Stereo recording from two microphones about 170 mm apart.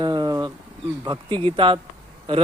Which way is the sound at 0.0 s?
25° right (ahead or behind).